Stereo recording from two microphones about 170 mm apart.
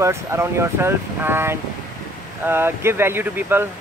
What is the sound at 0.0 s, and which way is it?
Speech, 15° right (ahead or behind).